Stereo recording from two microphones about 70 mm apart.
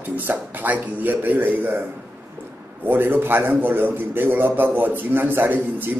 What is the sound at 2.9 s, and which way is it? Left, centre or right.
A man's voice, right.